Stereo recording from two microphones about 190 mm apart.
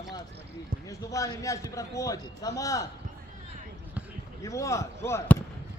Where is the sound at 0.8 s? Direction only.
20° left (ahead or behind).